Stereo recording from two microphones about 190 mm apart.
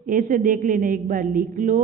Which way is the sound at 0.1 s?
45° right (ahead or behind).